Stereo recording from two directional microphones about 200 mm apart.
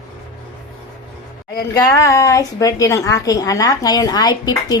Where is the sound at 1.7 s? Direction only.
15° left (ahead or behind).